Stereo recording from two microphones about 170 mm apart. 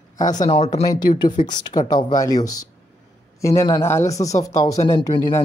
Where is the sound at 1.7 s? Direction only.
25° left (ahead or behind).